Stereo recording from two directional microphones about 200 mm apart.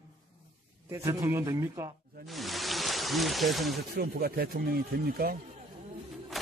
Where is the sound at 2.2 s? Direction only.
Centre (ahead or behind).